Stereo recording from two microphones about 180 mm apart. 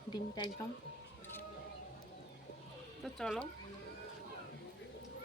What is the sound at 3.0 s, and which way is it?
Speech, centre (ahead or behind).